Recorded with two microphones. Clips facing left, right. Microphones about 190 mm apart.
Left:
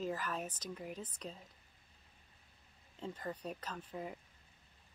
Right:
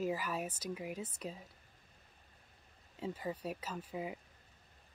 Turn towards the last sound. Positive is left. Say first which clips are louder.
# right 3 dB
turn(degrees=-10)  # may be behind; listen again after turning